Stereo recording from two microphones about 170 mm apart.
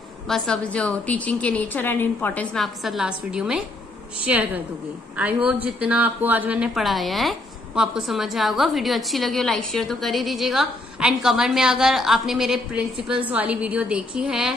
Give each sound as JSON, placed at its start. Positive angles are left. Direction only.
{"t": 0.3, "sound": "a woman's voice", "side_deg": 5}